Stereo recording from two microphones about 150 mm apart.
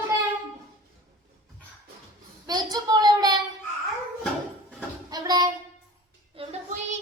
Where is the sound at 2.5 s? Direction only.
25° right (ahead or behind).